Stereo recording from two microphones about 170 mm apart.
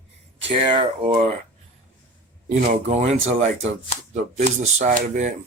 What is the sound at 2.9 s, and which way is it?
Speech, 40° right (ahead or behind).